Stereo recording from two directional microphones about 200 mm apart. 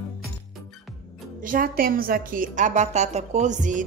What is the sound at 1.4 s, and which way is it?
A woman's voice, 45° right (ahead or behind).